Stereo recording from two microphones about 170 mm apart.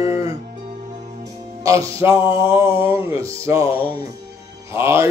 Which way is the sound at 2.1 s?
30° left (ahead or behind).